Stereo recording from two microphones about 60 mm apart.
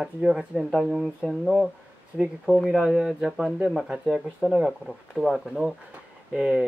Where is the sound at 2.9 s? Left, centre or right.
Centre.